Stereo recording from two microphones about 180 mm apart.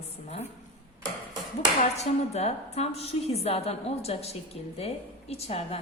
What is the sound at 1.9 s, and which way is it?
A woman's voice, 35° left (ahead or behind).